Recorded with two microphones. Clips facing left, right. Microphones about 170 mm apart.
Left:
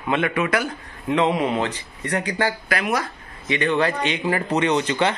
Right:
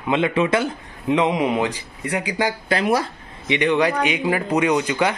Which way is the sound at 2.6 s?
30° right (ahead or behind).